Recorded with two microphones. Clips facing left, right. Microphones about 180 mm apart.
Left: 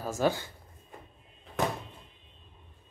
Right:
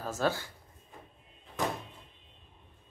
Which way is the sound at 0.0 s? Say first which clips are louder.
Left 3 dB; 10° left (ahead or behind).